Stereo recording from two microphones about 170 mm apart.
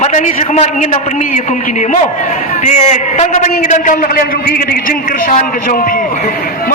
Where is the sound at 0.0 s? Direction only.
45° left (ahead or behind).